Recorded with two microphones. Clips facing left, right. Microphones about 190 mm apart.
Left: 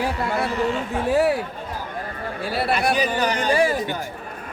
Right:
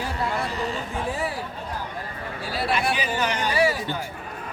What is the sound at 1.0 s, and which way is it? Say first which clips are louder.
Speech: left 12 dB; 65° left (ahead or behind).